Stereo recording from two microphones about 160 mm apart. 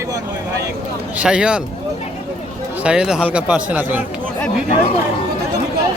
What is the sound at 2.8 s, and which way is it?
Speech, 5° right (ahead or behind).